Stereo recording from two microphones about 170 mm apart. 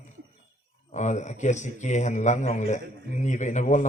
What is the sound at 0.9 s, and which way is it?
A man's voice, 45° left (ahead or behind).